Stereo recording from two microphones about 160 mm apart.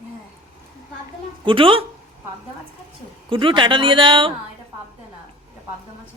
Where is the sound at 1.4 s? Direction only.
35° right (ahead or behind).